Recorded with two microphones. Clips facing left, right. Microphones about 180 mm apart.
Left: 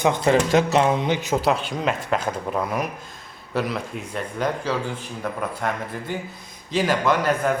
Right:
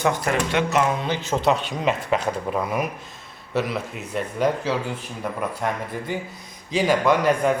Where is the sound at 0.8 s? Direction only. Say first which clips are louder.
Left 3 dB; 20° left (ahead or behind).